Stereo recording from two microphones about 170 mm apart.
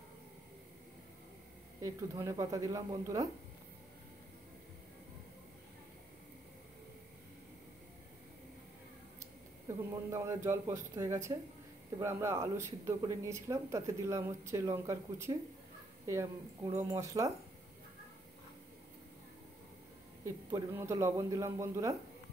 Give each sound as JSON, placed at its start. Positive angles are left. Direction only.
{"t": 1.8, "sound": "speech", "side_deg": -20}
{"t": 9.7, "sound": "a man's voice", "side_deg": -15}
{"t": 20.7, "sound": "a man's voice", "side_deg": -15}